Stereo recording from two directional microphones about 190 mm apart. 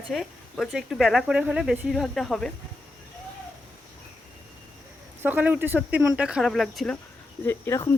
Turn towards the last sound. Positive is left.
turn(degrees=15)  # may be behind; listen again after turning